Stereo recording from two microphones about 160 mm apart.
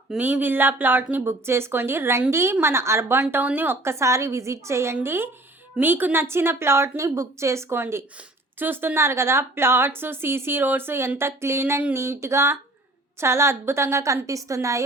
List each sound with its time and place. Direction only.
0.1 s a woman's voice: 10° right (ahead or behind)